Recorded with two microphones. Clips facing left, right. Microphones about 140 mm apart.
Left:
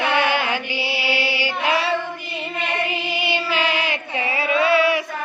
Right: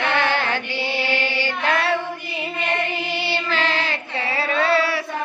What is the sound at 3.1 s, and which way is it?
Music, 10° left (ahead or behind).